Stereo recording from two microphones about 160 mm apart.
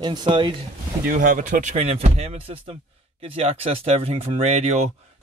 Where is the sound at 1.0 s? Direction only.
55° right (ahead or behind).